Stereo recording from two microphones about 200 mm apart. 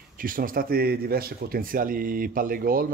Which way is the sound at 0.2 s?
45° right (ahead or behind).